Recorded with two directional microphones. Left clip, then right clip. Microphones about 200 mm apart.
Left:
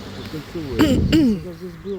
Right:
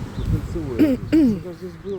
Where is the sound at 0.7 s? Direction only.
5° right (ahead or behind).